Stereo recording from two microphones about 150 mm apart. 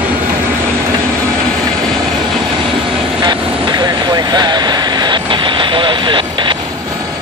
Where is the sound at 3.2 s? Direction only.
25° right (ahead or behind).